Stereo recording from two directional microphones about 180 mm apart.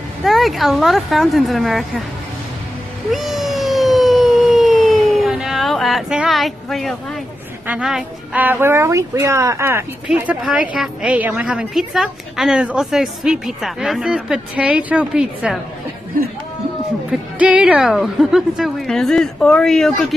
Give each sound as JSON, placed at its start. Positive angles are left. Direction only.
{"t": 0.2, "sound": "a woman's voice", "side_deg": 0}
{"t": 3.1, "sound": "cat", "side_deg": 0}
{"t": 7.6, "sound": "speech", "side_deg": -5}
{"t": 17.4, "sound": "a woman's voice", "side_deg": -5}